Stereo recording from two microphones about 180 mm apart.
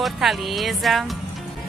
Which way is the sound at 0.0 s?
Centre (ahead or behind).